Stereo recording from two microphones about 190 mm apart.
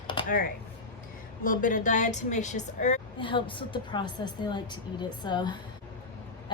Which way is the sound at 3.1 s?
25° left (ahead or behind).